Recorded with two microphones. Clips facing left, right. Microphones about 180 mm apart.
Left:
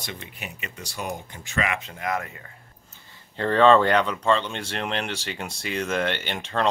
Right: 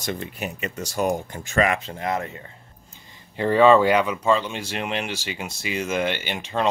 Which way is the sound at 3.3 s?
10° right (ahead or behind).